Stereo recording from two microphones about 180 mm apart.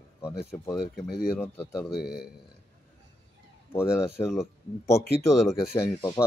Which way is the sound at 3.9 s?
15° left (ahead or behind).